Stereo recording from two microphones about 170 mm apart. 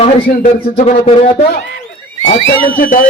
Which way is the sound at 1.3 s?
65° left (ahead or behind).